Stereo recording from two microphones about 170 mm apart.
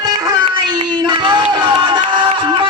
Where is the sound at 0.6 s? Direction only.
25° right (ahead or behind).